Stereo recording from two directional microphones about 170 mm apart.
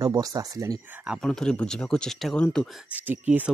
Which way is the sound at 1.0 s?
Centre (ahead or behind).